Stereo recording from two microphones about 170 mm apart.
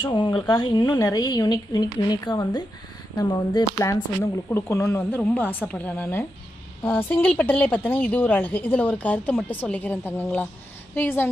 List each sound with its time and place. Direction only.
0.0 s a woman's voice: 30° left (ahead or behind); by 11.2 s 10° left (ahead or behind)